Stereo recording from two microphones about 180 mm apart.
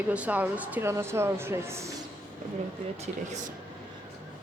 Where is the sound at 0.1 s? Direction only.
5° right (ahead or behind).